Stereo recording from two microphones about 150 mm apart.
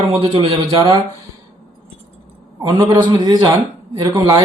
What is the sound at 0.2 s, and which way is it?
Speech, 40° right (ahead or behind).